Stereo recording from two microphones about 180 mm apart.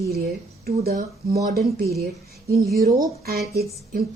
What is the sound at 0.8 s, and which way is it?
A woman's voice, 55° right (ahead or behind).